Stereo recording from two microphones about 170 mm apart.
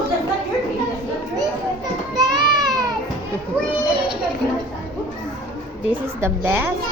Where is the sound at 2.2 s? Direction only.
25° right (ahead or behind).